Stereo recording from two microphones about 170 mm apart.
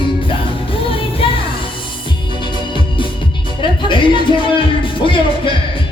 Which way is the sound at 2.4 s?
30° left (ahead or behind).